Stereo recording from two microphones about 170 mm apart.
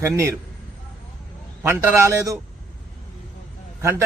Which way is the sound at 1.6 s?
15° right (ahead or behind).